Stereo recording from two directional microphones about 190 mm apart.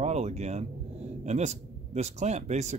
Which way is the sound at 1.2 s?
35° right (ahead or behind).